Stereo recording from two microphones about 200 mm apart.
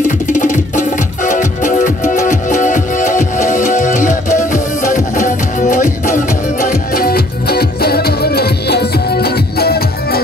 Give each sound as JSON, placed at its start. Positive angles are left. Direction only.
{"t": 0.3, "sound": "music", "side_deg": 40}